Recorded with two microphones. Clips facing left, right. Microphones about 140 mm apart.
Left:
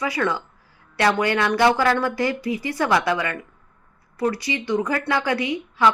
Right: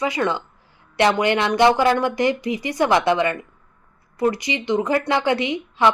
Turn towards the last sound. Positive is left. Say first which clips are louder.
# right 1 dB
turn(degrees=-20)  # may be behind; listen again after turning